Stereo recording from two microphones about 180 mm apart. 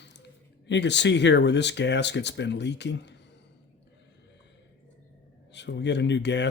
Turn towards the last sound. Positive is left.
turn(degrees=75)  # may be behind; listen again after turning